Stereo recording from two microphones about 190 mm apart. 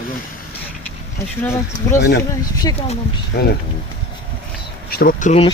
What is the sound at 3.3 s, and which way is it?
Speech, 60° left (ahead or behind).